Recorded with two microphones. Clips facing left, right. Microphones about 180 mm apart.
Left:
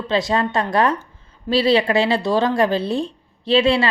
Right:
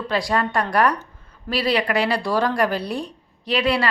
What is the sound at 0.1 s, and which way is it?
Speech, 25° left (ahead or behind).